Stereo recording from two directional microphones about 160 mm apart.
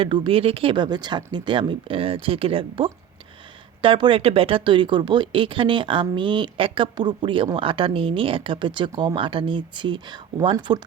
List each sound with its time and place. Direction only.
0.0 s speech: 35° right (ahead or behind)